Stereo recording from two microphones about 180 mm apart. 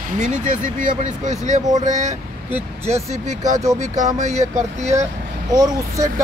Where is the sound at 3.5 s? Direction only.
20° right (ahead or behind).